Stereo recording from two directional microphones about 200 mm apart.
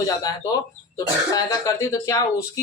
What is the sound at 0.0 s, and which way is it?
Speech, 15° left (ahead or behind).